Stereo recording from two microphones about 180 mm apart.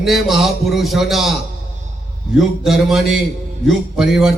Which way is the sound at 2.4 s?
Centre (ahead or behind).